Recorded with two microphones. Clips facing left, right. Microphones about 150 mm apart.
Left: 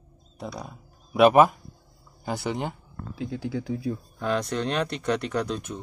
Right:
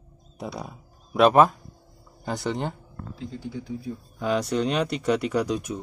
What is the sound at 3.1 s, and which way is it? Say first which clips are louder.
Speech: left 5 dB; 75° left (ahead or behind).